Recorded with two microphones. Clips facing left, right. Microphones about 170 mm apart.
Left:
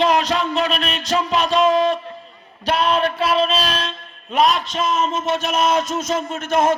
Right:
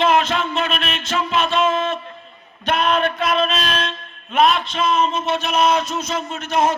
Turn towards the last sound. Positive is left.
turn(degrees=50)  # may be behind; listen again after turning